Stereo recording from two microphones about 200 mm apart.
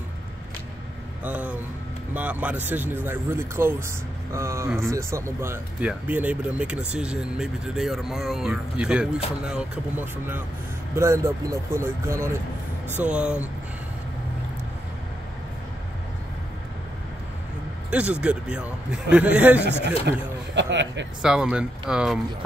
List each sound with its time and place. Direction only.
1.2 s speech: 5° right (ahead or behind)
17.9 s speech: 5° right (ahead or behind)
20.5 s speech: 65° right (ahead or behind)
21.2 s speech: 5° right (ahead or behind)